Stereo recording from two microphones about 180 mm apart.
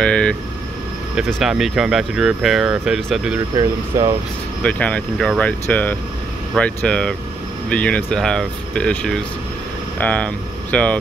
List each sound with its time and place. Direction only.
0.0 s vehicle: 5° left (ahead or behind)
1.1 s speech: centre (ahead or behind)
3.5 s speech: 20° right (ahead or behind)
4.6 s speech: 5° left (ahead or behind)